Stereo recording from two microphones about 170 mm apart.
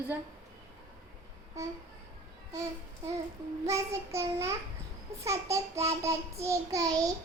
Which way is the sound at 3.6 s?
15° right (ahead or behind).